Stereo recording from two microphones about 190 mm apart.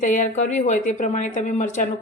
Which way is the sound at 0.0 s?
40° left (ahead or behind).